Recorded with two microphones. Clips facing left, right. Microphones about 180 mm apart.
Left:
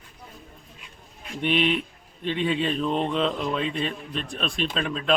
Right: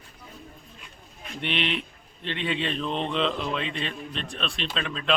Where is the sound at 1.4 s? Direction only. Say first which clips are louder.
Left 6 dB; 5° left (ahead or behind).